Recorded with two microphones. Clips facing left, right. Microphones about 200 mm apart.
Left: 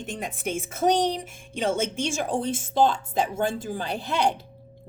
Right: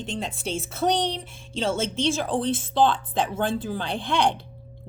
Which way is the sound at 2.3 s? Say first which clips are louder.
Right 2 dB; 10° left (ahead or behind).